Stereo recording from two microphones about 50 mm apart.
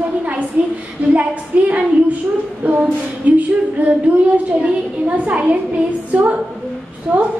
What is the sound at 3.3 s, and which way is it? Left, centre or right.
A woman's voice, right.